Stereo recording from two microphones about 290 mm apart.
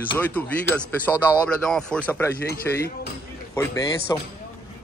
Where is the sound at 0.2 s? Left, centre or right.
Centre.